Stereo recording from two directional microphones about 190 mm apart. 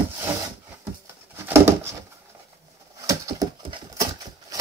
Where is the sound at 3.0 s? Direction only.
20° right (ahead or behind).